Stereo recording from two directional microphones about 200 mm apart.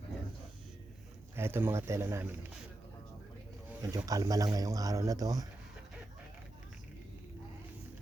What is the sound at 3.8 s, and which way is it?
Speech, 15° right (ahead or behind).